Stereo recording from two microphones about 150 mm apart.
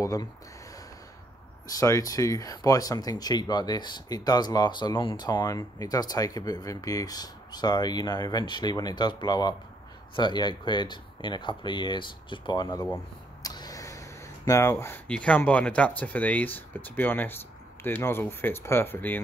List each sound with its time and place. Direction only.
0.0 s speech: 25° left (ahead or behind)
1.7 s speech: 20° left (ahead or behind)
12.8 s a sound: 20° left (ahead or behind)
15.0 s speech: 10° left (ahead or behind)